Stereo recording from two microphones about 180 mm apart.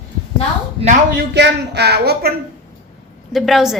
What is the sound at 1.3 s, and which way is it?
Speech, 70° right (ahead or behind).